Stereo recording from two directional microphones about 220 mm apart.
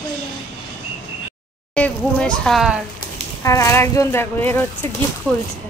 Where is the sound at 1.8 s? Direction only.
5° left (ahead or behind).